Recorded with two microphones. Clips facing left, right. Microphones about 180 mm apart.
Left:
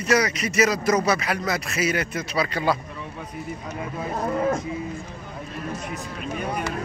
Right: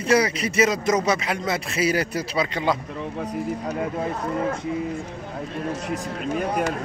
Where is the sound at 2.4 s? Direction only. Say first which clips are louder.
Even; 20° right (ahead or behind).